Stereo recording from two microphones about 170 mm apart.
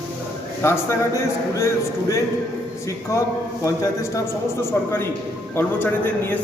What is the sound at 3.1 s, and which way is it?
A man's voice, 15° left (ahead or behind).